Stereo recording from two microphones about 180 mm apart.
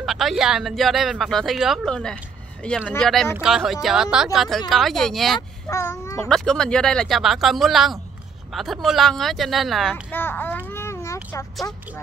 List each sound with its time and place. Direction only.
0.0 s speech: centre (ahead or behind)
5.7 s a child's voice: 15° left (ahead or behind)
6.2 s speech: 5° left (ahead or behind)
10.0 s a child's voice: 10° left (ahead or behind)
10.7 s a sound: 15° left (ahead or behind)
11.6 s speech: 15° left (ahead or behind)